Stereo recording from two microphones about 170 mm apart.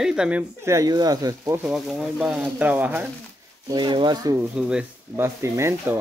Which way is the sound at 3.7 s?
25° right (ahead or behind).